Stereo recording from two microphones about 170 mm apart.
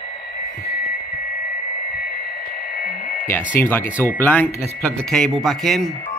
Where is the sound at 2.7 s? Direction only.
60° left (ahead or behind).